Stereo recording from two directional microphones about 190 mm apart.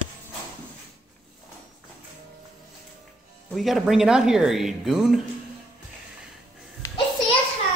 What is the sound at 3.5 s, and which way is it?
Speech, centre (ahead or behind).